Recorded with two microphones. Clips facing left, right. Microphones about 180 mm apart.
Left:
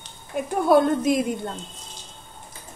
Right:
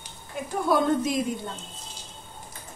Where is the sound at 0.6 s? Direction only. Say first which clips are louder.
Left 5 dB; 60° left (ahead or behind).